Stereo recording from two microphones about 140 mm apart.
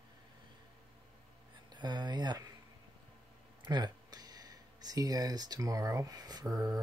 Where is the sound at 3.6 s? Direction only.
30° right (ahead or behind).